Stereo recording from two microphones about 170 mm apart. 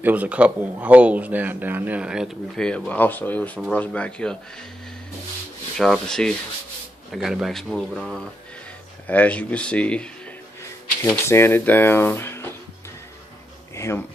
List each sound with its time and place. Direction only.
0.0 s speech: 10° right (ahead or behind); by 4.4 s 5° left (ahead or behind)
5.8 s speech: 5° left (ahead or behind)
11.2 s speech: 15° left (ahead or behind)
13.7 s bee: 15° left (ahead or behind)